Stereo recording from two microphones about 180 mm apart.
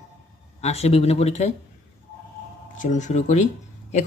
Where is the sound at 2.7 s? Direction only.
40° left (ahead or behind).